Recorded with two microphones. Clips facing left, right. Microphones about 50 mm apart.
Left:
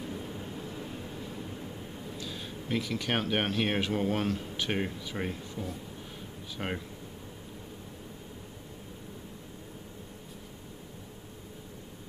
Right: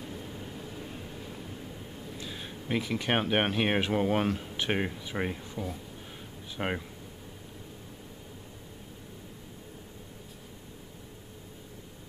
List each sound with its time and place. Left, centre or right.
0.0 s vehicle: centre
2.1 s a sound: centre
2.7 s speech: centre
6.5 s speech: centre